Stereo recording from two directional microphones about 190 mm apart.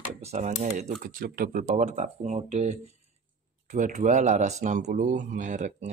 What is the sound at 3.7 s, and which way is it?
Speech, 40° right (ahead or behind).